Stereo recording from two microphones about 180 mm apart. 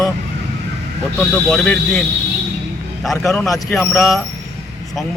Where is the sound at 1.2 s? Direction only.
5° left (ahead or behind).